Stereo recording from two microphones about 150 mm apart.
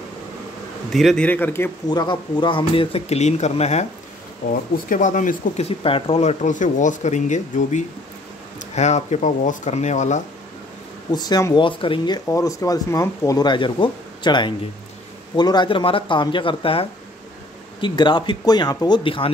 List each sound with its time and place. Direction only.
0.9 s a man's voice: 5° left (ahead or behind)
1.9 s speech: 30° left (ahead or behind); by 3.8 s 45° left (ahead or behind)
4.5 s speech: 65° left (ahead or behind)
5.6 s speech: 40° left (ahead or behind)
11.1 s speech: 25° left (ahead or behind)
12.3 s speech: 20° left (ahead or behind)